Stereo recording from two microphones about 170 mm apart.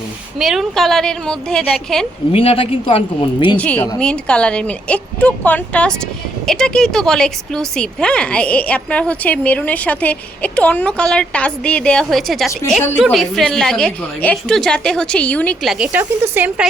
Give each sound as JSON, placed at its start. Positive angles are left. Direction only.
{"t": 0.3, "sound": "a woman's voice", "side_deg": 0}
{"t": 2.3, "sound": "speech", "side_deg": 35}
{"t": 3.6, "sound": "a woman's voice", "side_deg": 10}